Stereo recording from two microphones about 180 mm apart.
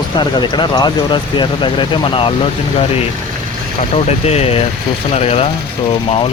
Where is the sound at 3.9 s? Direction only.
35° left (ahead or behind).